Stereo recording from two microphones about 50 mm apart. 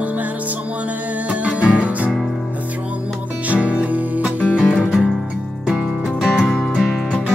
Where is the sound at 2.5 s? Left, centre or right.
Right.